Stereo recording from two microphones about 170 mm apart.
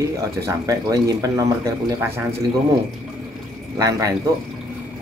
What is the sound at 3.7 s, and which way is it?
Speech, 20° right (ahead or behind).